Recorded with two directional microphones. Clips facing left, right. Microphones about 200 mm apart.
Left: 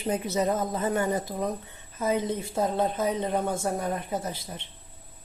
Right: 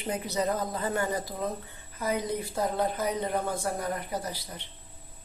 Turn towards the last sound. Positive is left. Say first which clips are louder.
# left 3 dB
turn(degrees=25)  # may be behind; listen again after turning